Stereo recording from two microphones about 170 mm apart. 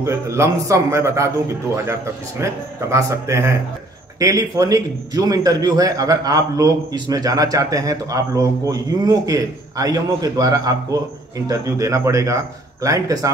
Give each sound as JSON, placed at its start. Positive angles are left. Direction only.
{"t": 0.0, "sound": "a man's voice", "side_deg": -15}
{"t": 2.4, "sound": "a man's voice", "side_deg": -15}